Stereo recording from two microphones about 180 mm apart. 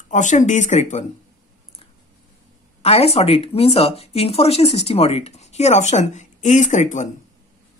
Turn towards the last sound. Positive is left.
turn(degrees=40)  # may be behind; listen again after turning